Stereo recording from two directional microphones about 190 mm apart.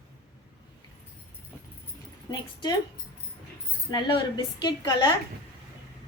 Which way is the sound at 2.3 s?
20° left (ahead or behind).